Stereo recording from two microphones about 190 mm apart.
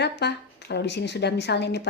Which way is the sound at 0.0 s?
60° left (ahead or behind).